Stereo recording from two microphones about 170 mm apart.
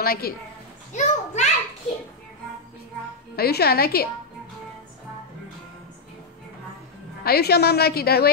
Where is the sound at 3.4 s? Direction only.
65° left (ahead or behind).